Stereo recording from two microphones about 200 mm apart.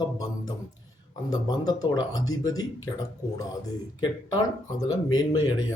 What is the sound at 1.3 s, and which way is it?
Speech, 20° left (ahead or behind).